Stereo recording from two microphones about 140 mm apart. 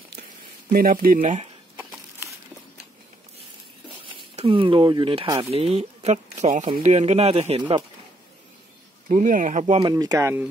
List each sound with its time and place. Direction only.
0.7 s speech: 85° right; by 1.5 s 60° right (ahead or behind)
4.5 s speech: 35° right (ahead or behind)
9.1 s speech: 65° right (ahead or behind)
9.8 s speech: 30° right (ahead or behind)